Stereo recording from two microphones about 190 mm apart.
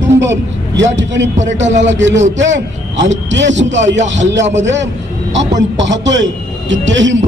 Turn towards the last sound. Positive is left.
turn(degrees=-75)  # may be behind; listen again after turning